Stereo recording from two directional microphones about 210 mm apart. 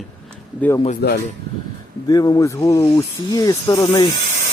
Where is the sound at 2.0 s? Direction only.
20° left (ahead or behind).